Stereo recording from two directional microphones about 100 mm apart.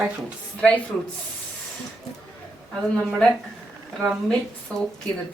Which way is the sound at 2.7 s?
5° left (ahead or behind).